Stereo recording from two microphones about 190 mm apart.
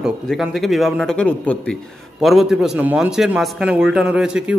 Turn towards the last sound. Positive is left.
turn(degrees=-5)  # may be behind; listen again after turning